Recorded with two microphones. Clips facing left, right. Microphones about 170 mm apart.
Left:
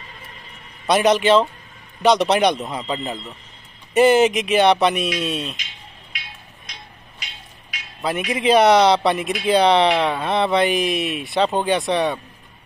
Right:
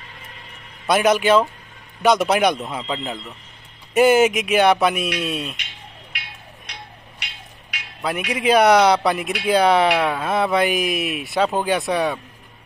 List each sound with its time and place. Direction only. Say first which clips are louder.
0.8 s speech: left 1 dB; centre (ahead or behind)
6.1 s music: right 1 dB; 65° right (ahead or behind)
8.3 s speech: even; centre (ahead or behind)